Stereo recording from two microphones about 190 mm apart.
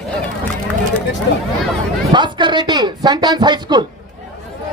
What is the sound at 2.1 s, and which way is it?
Speech, 25° right (ahead or behind).